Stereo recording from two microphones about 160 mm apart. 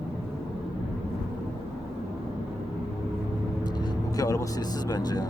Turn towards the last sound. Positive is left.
turn(degrees=25)  # may be behind; listen again after turning